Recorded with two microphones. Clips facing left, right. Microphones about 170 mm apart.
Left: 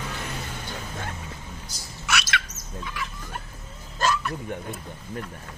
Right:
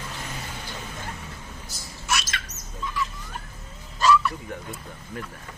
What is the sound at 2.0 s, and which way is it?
Bird, 70° left (ahead or behind).